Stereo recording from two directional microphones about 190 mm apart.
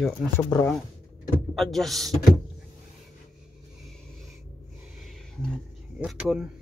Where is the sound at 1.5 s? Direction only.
Centre (ahead or behind).